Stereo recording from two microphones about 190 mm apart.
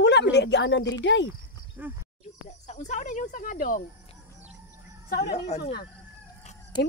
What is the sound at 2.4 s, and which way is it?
Speech, 35° left (ahead or behind).